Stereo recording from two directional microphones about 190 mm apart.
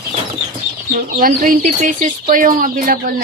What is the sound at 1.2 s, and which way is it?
Speech, 45° right (ahead or behind).